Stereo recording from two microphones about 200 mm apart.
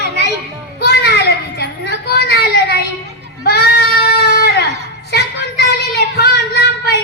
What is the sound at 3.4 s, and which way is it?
Goat, 50° left (ahead or behind).